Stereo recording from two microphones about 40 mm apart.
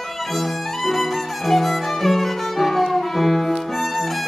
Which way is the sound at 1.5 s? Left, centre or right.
Centre.